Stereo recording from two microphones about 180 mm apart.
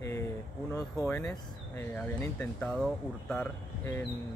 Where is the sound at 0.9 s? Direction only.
15° left (ahead or behind).